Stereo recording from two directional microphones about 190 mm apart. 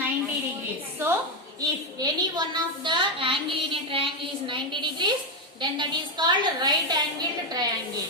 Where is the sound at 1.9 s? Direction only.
20° right (ahead or behind).